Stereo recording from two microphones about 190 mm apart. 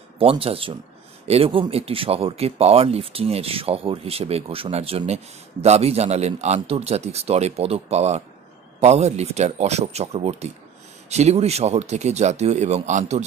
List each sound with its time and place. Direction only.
0.2 s speech: 30° right (ahead or behind)